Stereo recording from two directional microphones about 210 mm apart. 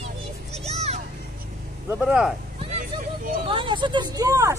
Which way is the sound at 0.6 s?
30° right (ahead or behind).